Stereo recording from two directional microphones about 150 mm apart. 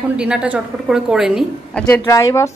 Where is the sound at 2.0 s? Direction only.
20° left (ahead or behind).